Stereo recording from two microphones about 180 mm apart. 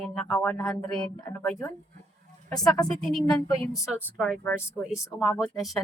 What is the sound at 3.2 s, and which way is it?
Speech, 20° left (ahead or behind).